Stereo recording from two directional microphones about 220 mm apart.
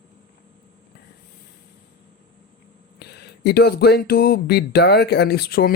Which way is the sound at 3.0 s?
50° left (ahead or behind).